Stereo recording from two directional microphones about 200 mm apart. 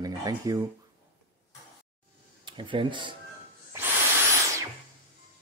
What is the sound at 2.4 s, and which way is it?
Speech, 25° right (ahead or behind).